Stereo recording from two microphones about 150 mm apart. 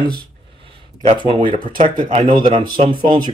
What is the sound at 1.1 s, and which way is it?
Speech, 35° right (ahead or behind).